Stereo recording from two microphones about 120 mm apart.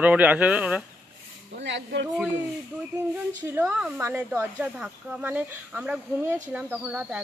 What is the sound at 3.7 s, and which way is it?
Speech, 10° right (ahead or behind).